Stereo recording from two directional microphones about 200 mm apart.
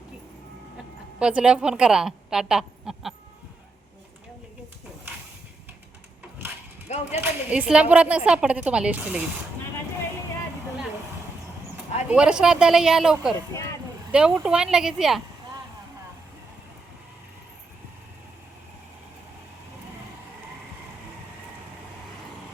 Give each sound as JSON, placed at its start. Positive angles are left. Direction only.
{"t": 1.2, "sound": "a woman's voice", "side_deg": -5}
{"t": 6.8, "sound": "speech", "side_deg": 35}
{"t": 7.2, "sound": "a woman's voice", "side_deg": -5}
{"t": 12.0, "sound": "a woman's voice", "side_deg": -5}